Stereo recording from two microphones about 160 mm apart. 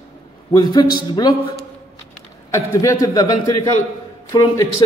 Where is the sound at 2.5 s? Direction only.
20° left (ahead or behind).